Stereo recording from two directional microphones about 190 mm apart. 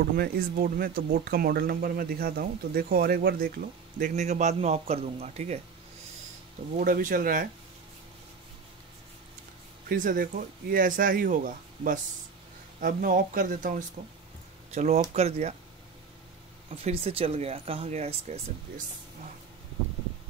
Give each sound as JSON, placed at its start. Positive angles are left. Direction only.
{"t": 0.2, "sound": "speech", "side_deg": -50}
{"t": 6.8, "sound": "speech", "side_deg": -45}
{"t": 9.8, "sound": "speech", "side_deg": -45}
{"t": 16.7, "sound": "speech", "side_deg": -30}